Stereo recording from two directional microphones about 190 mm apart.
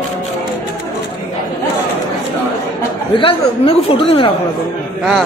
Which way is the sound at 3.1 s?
30° left (ahead or behind).